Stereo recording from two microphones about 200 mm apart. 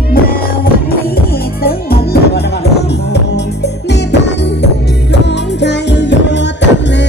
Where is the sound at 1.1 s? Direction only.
50° left (ahead or behind).